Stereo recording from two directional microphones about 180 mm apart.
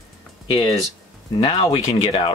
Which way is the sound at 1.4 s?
30° left (ahead or behind).